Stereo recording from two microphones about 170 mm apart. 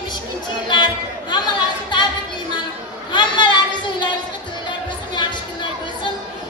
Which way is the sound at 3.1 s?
25° left (ahead or behind).